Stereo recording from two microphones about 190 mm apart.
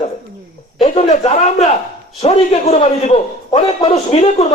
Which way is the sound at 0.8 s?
30° left (ahead or behind).